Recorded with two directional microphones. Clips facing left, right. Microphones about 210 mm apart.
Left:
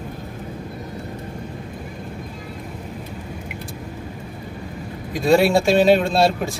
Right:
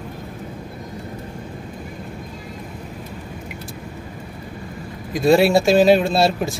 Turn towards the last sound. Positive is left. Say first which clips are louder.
# even
turn(degrees=0)  # may be behind; listen again after turning